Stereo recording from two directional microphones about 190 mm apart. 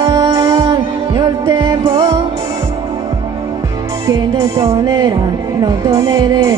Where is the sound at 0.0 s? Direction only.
20° right (ahead or behind).